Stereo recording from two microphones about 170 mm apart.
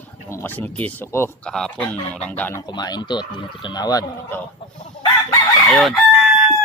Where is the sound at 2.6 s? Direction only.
25° left (ahead or behind).